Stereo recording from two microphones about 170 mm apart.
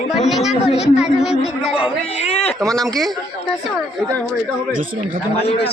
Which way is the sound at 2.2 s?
40° left (ahead or behind).